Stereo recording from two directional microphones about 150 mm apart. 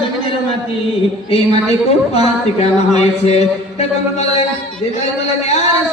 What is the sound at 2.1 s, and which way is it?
Speech, 45° left (ahead or behind).